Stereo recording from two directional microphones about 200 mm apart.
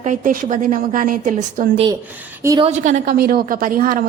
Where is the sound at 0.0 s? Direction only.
40° right (ahead or behind).